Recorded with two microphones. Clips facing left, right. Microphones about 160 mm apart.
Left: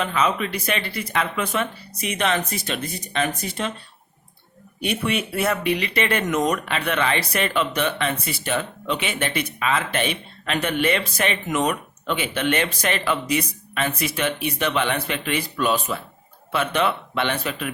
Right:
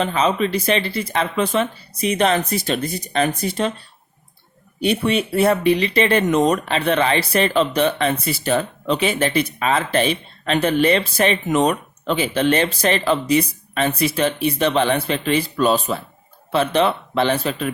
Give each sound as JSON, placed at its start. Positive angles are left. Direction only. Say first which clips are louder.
{"t": 0.0, "sound": "speech", "louder": "right 4 dB", "side_deg": -30}
{"t": 4.8, "sound": "speech", "louder": "right 5 dB", "side_deg": -30}